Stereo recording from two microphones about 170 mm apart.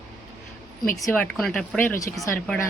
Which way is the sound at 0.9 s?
20° left (ahead or behind).